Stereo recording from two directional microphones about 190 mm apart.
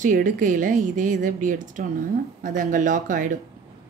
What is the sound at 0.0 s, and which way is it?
A woman's voice, 45° right (ahead or behind).